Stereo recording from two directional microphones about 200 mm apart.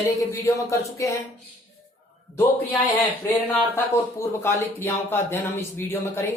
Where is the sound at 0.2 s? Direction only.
15° left (ahead or behind).